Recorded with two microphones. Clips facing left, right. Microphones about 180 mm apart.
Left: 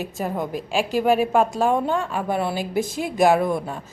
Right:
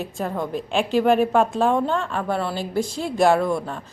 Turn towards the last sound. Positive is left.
turn(degrees=15)  # may be behind; listen again after turning